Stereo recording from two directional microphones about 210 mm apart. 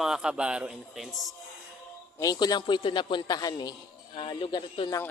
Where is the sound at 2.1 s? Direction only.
20° left (ahead or behind).